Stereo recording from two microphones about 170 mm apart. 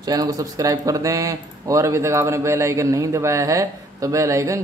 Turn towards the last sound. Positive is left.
turn(degrees=-20)  # may be behind; listen again after turning